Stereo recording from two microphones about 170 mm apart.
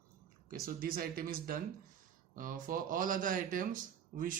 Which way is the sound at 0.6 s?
55° right (ahead or behind).